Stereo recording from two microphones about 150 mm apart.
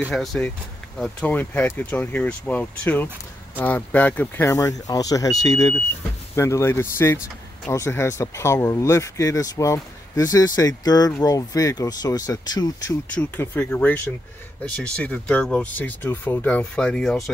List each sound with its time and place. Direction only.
0.1 s speech: centre (ahead or behind); by 12.9 s 25° left (ahead or behind)
13.1 s speech: 10° left (ahead or behind)